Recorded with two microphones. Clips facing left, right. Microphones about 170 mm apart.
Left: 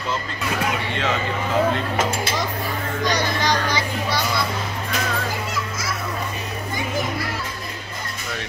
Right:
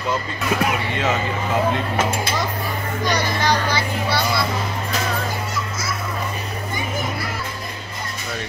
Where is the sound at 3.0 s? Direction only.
15° left (ahead or behind).